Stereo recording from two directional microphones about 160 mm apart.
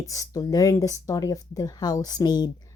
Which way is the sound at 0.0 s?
20° left (ahead or behind).